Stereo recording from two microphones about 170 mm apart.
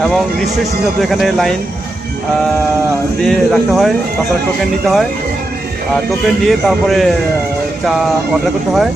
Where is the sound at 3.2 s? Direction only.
Centre (ahead or behind).